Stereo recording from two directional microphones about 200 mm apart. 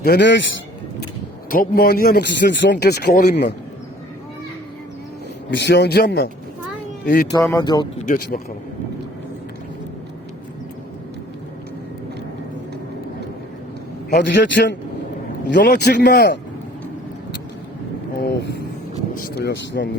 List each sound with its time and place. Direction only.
0.0 s speech: 55° left (ahead or behind)
1.5 s speech: 45° left (ahead or behind)
5.5 s speech: 60° left (ahead or behind)
7.3 s speech: 15° left (ahead or behind)
8.0 s speech: 40° left (ahead or behind)
14.1 s speech: 60° left (ahead or behind)
19.1 s speech: 50° left (ahead or behind)